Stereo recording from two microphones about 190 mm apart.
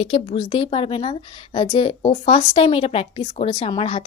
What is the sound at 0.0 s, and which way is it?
Speech, 30° left (ahead or behind).